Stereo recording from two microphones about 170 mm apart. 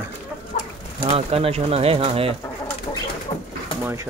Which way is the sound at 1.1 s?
35° right (ahead or behind).